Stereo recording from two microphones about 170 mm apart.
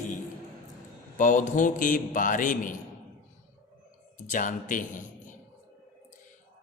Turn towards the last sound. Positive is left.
turn(degrees=50)  # may be behind; listen again after turning